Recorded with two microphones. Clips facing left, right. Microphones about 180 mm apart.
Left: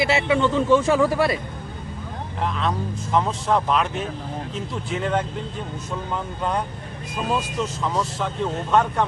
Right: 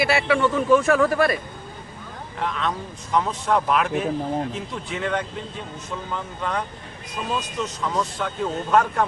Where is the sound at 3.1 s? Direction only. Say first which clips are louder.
Even; centre (ahead or behind).